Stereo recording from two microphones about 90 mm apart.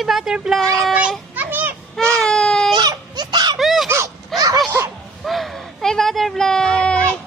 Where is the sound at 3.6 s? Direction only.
5° right (ahead or behind).